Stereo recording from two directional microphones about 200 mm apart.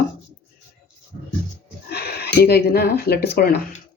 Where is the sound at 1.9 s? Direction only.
50° left (ahead or behind).